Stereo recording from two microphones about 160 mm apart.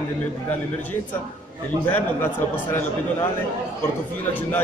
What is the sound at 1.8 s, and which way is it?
Speech, 15° left (ahead or behind).